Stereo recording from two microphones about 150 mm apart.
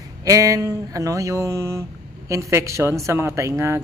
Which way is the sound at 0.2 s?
25° right (ahead or behind).